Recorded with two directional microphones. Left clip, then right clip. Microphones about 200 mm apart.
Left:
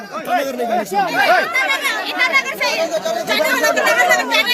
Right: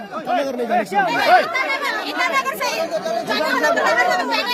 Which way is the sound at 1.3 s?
20° right (ahead or behind).